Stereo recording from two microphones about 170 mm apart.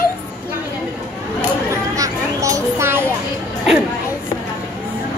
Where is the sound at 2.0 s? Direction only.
20° right (ahead or behind).